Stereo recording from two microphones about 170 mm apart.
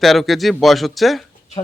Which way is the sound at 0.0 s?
Centre (ahead or behind).